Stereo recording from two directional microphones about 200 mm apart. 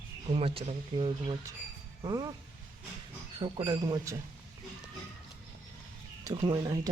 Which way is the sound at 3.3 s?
25° right (ahead or behind).